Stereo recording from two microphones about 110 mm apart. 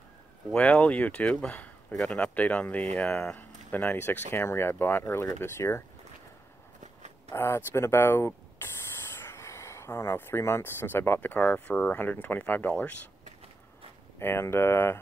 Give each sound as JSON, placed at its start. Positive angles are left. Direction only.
{"t": 0.5, "sound": "speech", "side_deg": 10}
{"t": 7.3, "sound": "speech", "side_deg": 25}
{"t": 14.2, "sound": "speech", "side_deg": 20}